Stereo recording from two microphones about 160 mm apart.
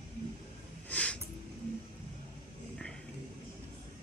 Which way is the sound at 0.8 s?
10° left (ahead or behind).